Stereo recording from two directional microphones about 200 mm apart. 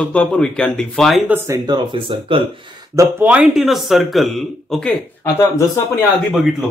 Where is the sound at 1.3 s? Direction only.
15° right (ahead or behind).